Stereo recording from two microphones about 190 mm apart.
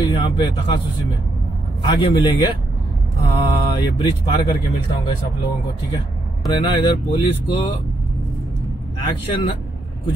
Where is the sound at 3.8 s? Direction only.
25° left (ahead or behind).